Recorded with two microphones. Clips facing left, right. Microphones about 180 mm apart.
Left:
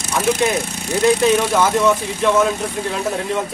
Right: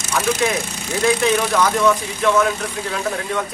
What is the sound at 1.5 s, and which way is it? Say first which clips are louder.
Speech: left 1 dB; 25° left (ahead or behind).